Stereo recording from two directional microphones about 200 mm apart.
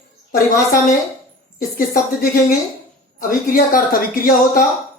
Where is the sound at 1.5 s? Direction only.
45° left (ahead or behind).